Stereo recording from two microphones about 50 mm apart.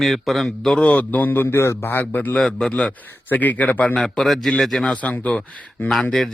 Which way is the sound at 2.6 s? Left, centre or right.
Left.